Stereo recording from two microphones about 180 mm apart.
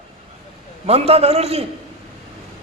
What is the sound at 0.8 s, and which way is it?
Speech, 35° right (ahead or behind).